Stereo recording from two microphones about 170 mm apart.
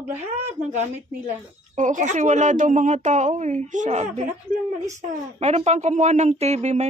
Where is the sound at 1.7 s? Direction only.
45° right (ahead or behind).